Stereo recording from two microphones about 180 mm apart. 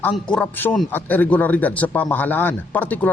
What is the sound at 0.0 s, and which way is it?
A man's voice, 10° left (ahead or behind).